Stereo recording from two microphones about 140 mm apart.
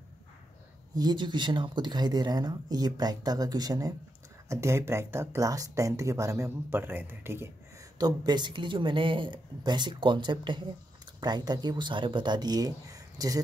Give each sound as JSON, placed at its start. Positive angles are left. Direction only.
{"t": 0.9, "sound": "speech", "side_deg": -30}
{"t": 8.0, "sound": "speech", "side_deg": -30}